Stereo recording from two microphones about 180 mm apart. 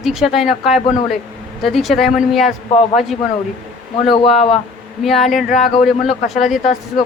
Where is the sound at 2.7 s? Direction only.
30° left (ahead or behind).